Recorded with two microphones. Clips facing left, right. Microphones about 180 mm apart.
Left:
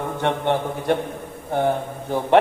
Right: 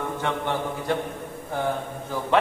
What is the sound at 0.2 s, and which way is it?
Speech, 60° left (ahead or behind).